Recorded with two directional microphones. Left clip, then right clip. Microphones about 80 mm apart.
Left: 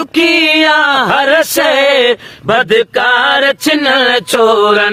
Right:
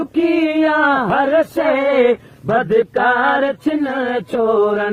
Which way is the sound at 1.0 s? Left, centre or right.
Left.